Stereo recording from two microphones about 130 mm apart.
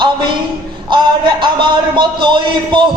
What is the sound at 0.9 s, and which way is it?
A man's voice, 35° right (ahead or behind).